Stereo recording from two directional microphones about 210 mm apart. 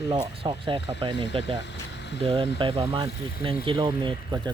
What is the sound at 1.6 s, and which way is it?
Vehicle, 55° left (ahead or behind).